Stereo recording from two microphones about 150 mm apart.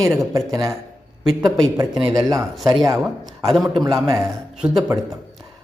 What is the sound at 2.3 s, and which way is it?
Speech, centre (ahead or behind).